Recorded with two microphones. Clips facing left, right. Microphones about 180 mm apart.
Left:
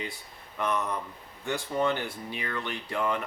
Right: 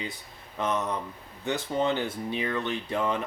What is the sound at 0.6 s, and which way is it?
Speech, 20° right (ahead or behind).